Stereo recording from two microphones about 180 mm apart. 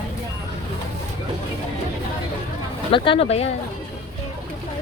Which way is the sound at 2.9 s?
30° left (ahead or behind).